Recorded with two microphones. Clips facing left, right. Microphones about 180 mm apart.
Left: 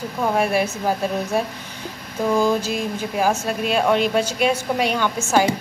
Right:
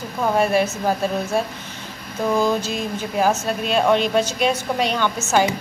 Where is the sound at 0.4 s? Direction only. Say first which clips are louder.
Right 3 dB; 10° left (ahead or behind).